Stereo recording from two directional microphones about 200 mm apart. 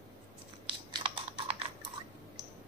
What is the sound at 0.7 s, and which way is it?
Scissors, 25° right (ahead or behind).